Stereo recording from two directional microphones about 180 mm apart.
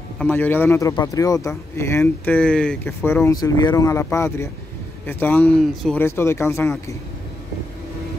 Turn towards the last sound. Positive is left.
turn(degrees=15)  # may be behind; listen again after turning